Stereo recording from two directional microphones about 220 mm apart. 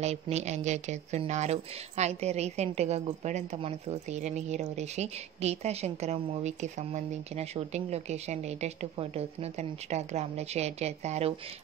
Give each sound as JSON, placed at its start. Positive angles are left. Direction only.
{"t": 0.0, "sound": "speech", "side_deg": -30}